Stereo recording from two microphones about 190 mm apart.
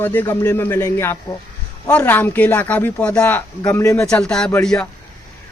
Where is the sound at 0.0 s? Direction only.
10° left (ahead or behind).